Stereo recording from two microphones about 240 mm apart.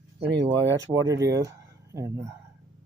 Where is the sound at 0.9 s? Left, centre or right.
Centre.